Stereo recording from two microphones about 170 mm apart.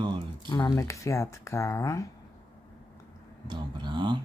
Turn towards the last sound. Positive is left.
turn(degrees=-25)  # may be behind; listen again after turning